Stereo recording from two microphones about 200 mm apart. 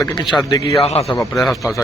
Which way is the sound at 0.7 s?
30° left (ahead or behind).